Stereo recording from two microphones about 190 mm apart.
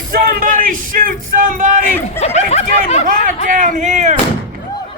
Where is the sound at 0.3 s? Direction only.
45° right (ahead or behind).